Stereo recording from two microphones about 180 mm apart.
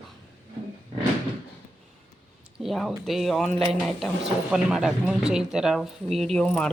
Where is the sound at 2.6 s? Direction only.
Centre (ahead or behind).